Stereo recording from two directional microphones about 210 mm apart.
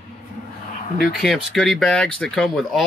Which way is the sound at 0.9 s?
45° left (ahead or behind).